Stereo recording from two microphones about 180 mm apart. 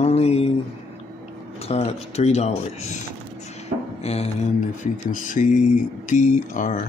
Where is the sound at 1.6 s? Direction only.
35° left (ahead or behind).